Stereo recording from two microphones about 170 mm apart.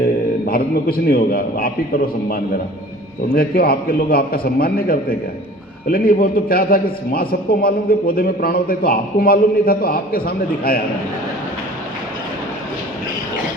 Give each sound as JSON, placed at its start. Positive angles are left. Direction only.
{"t": 0.4, "sound": "a man's voice", "side_deg": 60}